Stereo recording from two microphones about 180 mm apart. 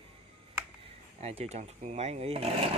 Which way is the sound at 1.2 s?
35° right (ahead or behind).